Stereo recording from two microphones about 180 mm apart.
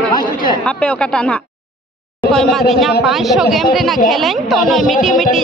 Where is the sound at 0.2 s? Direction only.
45° left (ahead or behind).